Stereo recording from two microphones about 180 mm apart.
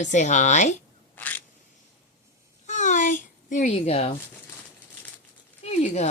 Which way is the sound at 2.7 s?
45° left (ahead or behind).